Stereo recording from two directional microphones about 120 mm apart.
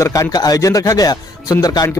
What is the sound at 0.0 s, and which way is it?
A man's voice, 25° left (ahead or behind).